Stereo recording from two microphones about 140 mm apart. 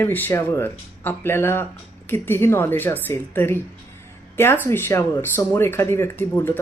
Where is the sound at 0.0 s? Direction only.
15° left (ahead or behind).